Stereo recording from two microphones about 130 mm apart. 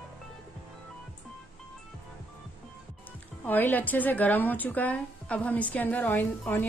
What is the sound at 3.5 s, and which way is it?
A woman's voice, 15° left (ahead or behind).